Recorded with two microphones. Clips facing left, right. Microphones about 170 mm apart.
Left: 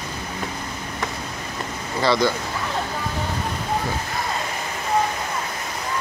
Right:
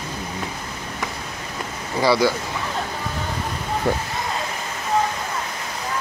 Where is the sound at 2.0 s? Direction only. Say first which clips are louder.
Right 2 dB; 10° right (ahead or behind).